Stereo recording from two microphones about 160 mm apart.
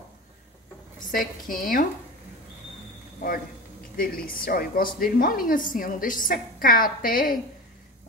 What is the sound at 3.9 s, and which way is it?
A woman's voice, 60° left (ahead or behind).